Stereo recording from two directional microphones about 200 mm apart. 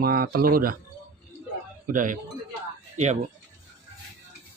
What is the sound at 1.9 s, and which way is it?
Speech, 40° right (ahead or behind).